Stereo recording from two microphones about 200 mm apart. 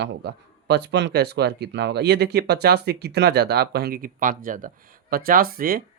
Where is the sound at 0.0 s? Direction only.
60° right (ahead or behind).